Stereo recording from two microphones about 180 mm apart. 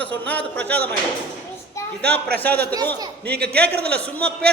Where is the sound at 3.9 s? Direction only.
10° left (ahead or behind).